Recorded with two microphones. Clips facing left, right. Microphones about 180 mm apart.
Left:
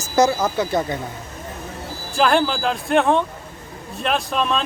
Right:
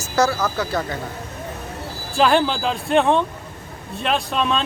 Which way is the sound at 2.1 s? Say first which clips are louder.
Right 1 dB; centre (ahead or behind).